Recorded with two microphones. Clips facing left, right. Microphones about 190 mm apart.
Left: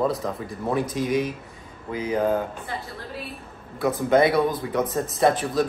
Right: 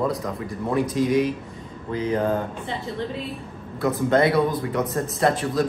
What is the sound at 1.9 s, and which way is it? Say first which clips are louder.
Speech: even; 10° left (ahead or behind).